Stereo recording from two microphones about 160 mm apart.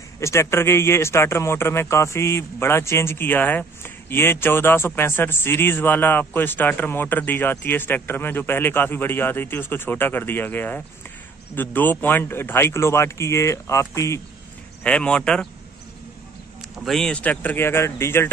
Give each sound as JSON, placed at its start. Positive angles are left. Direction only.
{"t": 0.2, "sound": "a man's voice", "side_deg": 15}
{"t": 14.8, "sound": "a man's voice", "side_deg": 5}
{"t": 16.8, "sound": "a man's voice", "side_deg": 5}